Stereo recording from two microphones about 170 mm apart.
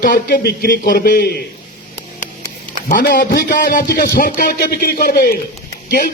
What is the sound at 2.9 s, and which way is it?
A man's voice, 60° left (ahead or behind).